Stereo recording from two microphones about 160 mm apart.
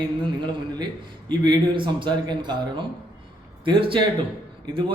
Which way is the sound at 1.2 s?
25° right (ahead or behind).